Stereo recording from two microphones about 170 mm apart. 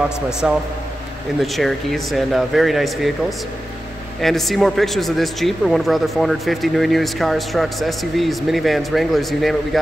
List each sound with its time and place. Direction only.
0.4 s a man's voice: 5° right (ahead or behind)